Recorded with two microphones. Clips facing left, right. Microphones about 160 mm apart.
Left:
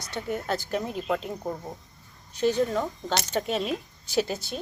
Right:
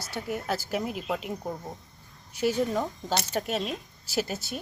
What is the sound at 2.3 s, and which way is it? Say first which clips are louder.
A woman's voice: left 2 dB; 10° right (ahead or behind).